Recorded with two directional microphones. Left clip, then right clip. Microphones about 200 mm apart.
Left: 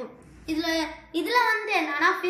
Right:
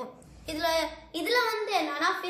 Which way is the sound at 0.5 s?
45° right (ahead or behind).